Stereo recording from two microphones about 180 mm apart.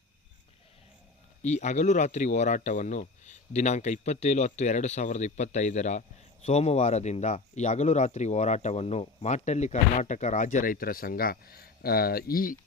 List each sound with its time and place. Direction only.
1.4 s speech: 40° left (ahead or behind)